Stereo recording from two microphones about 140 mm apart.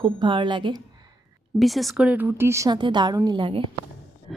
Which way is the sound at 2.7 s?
35° right (ahead or behind).